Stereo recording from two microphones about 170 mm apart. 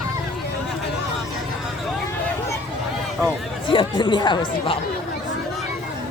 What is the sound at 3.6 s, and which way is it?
Speech, 30° left (ahead or behind).